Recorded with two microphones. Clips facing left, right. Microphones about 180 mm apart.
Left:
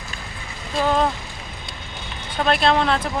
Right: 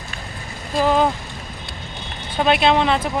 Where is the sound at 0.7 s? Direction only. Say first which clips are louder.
Right 3 dB; 5° right (ahead or behind).